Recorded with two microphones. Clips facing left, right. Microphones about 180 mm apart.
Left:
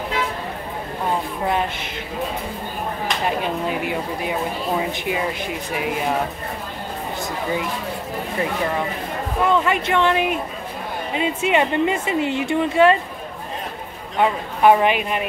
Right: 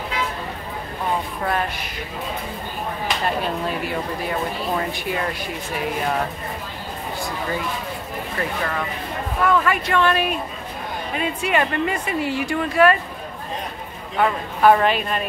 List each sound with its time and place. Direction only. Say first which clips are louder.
1.4 s speech: left 2 dB; 20° left (ahead or behind)
3.3 s speech: left 1 dB; 15° left (ahead or behind)
8.4 s speech: left 3 dB; 20° left (ahead or behind)
14.1 s speech: left 1 dB; 15° left (ahead or behind)